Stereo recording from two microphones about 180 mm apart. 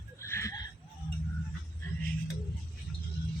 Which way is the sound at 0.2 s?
15° left (ahead or behind).